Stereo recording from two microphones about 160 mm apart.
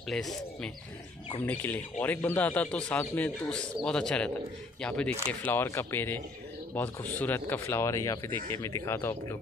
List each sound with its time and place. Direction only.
0.1 s speech: centre (ahead or behind)